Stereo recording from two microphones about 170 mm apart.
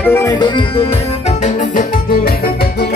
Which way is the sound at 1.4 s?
45° left (ahead or behind).